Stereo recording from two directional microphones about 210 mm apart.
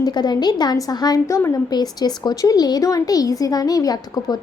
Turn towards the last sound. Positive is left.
turn(degrees=20)  # may be behind; listen again after turning